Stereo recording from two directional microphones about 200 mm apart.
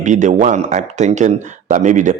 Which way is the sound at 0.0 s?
40° right (ahead or behind).